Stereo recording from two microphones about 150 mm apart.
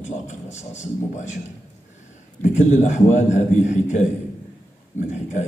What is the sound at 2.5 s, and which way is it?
A man's voice, 50° left (ahead or behind).